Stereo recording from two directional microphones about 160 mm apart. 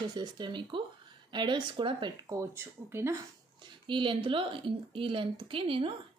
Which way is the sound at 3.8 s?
30° right (ahead or behind).